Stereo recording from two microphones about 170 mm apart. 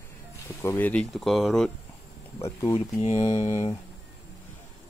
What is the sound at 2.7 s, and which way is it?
Speech, 40° left (ahead or behind).